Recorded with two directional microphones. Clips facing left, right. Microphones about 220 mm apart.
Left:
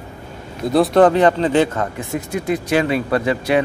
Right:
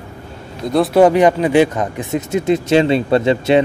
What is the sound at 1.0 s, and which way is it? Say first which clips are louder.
Speech: right 4 dB; 10° right (ahead or behind).